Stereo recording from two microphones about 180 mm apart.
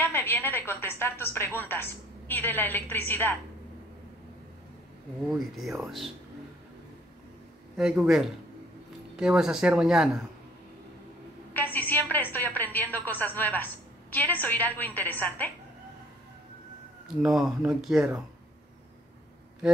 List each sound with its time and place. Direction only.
0.0 s speech: 15° left (ahead or behind)
5.6 s speech: centre (ahead or behind)
7.7 s speech: 5° right (ahead or behind)
11.5 s speech: 10° left (ahead or behind)
17.2 s speech: centre (ahead or behind)